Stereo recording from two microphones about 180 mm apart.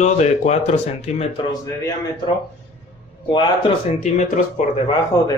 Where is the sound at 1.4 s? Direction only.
25° left (ahead or behind).